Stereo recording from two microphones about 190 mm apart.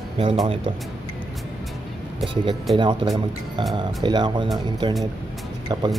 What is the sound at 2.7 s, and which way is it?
Speech, 25° right (ahead or behind).